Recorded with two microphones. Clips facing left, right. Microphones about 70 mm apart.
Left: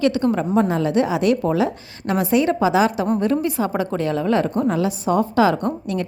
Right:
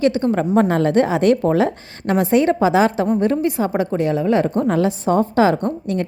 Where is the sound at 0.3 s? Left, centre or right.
Right.